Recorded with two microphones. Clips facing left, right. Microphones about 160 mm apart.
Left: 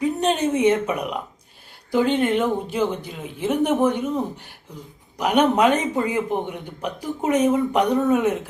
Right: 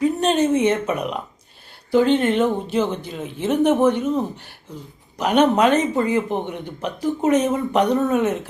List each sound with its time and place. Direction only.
0.0 s speech: 15° left (ahead or behind)
3.6 s speech: 20° right (ahead or behind)
3.8 s speech: 10° left (ahead or behind)
5.1 s speech: 10° left (ahead or behind)